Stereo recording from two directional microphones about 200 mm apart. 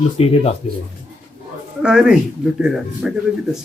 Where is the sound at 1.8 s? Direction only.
5° right (ahead or behind).